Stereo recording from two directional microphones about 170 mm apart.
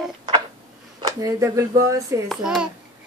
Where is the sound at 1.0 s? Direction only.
20° right (ahead or behind).